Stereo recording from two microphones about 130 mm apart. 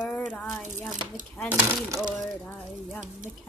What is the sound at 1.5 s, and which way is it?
Speech, 25° right (ahead or behind).